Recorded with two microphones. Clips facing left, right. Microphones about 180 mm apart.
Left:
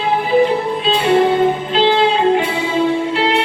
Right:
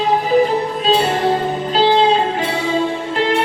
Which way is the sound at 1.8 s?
40° right (ahead or behind).